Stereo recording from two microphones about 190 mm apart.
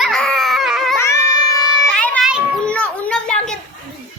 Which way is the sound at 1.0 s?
15° left (ahead or behind).